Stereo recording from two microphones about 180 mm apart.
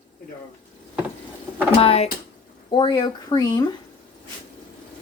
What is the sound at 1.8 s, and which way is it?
A woman's voice, 35° left (ahead or behind).